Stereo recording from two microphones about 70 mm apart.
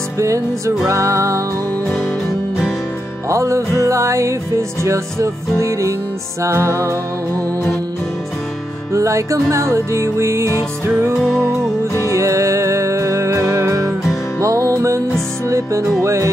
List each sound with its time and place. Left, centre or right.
0.2 s music: right
3.3 s music: right
8.9 s music: right
11.1 s music: centre
12.1 s music: right